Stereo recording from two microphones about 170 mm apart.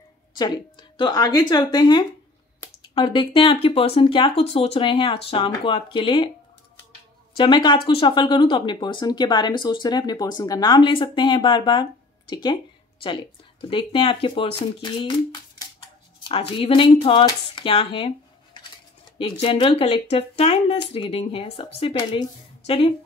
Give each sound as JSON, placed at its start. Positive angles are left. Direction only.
{"t": 0.4, "sound": "speech", "side_deg": 30}
{"t": 7.3, "sound": "speech", "side_deg": 25}
{"t": 16.3, "sound": "speech", "side_deg": 30}